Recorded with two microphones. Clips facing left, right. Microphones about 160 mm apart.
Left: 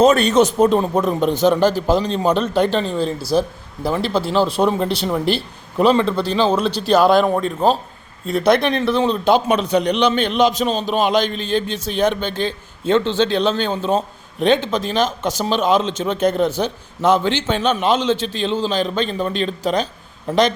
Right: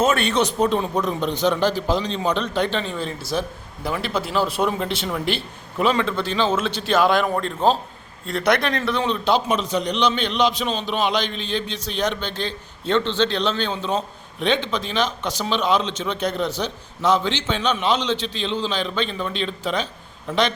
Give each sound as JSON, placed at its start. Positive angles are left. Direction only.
{"t": 0.0, "sound": "a man's voice", "side_deg": 40}
{"t": 7.3, "sound": "a man's voice", "side_deg": 10}
{"t": 8.3, "sound": "speech", "side_deg": 25}
{"t": 9.2, "sound": "a man's voice", "side_deg": 55}